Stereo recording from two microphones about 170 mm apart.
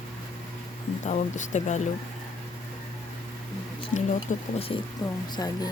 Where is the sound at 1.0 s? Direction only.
45° left (ahead or behind).